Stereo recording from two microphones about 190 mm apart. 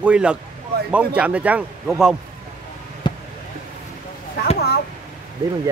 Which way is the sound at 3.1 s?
25° left (ahead or behind).